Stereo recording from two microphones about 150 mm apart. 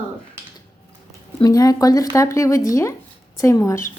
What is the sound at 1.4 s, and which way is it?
Speech, 25° left (ahead or behind).